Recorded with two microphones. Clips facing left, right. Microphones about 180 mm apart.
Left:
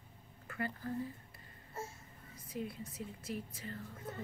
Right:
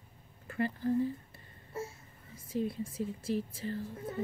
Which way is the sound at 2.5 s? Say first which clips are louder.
Right 8 dB; 25° right (ahead or behind).